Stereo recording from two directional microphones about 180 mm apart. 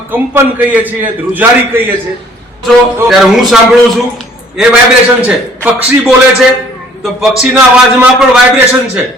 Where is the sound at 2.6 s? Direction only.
Centre (ahead or behind).